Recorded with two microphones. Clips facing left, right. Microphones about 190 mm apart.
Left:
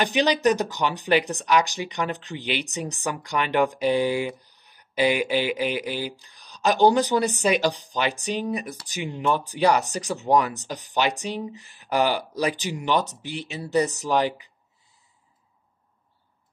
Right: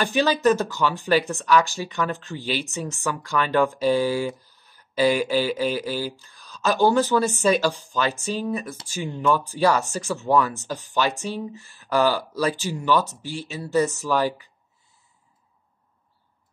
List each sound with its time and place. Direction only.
0.0 s speech: 20° left (ahead or behind)